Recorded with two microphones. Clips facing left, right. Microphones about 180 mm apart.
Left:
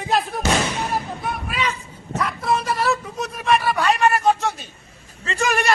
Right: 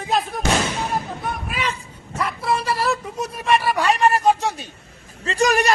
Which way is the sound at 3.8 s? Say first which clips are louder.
Right 1 dB; 35° right (ahead or behind).